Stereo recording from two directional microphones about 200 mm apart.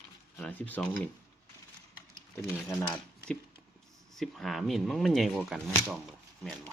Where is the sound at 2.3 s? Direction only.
10° left (ahead or behind).